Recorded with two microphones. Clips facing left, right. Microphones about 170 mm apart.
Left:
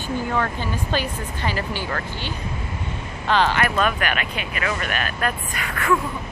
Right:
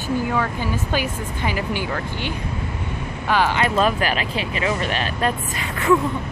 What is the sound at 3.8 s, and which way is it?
Speech, 30° right (ahead or behind).